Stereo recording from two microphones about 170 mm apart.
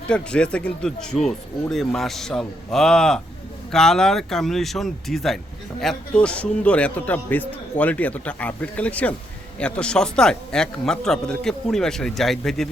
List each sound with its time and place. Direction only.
0.1 s a man's voice: 5° left (ahead or behind)